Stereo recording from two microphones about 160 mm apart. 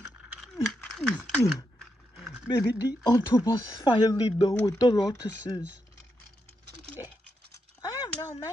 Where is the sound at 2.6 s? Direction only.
25° left (ahead or behind).